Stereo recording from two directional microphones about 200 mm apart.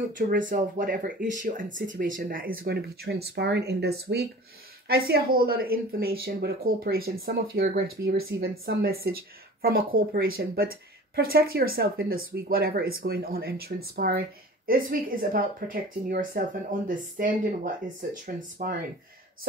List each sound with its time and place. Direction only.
0.1 s speech: 40° right (ahead or behind)